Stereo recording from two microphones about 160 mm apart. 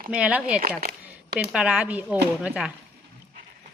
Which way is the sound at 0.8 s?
70° right (ahead or behind).